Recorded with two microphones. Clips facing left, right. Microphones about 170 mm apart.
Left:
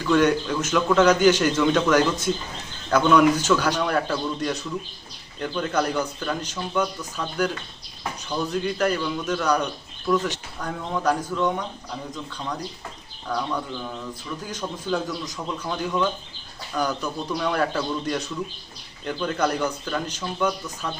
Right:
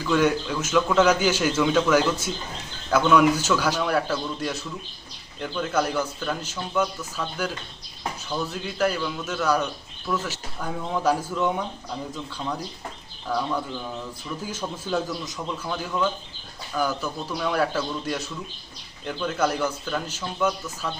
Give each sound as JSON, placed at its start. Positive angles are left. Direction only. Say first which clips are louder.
{"t": 0.0, "sound": "a man's voice", "louder": "left 2 dB", "side_deg": -5}
{"t": 13.2, "sound": "a man's voice", "louder": "right 1 dB", "side_deg": -5}
{"t": 16.7, "sound": "a man's voice", "louder": "even", "side_deg": -5}